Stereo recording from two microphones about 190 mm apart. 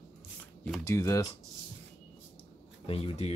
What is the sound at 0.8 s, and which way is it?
Speech, 15° left (ahead or behind).